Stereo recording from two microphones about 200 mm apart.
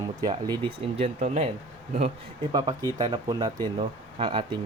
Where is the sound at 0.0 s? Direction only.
20° right (ahead or behind).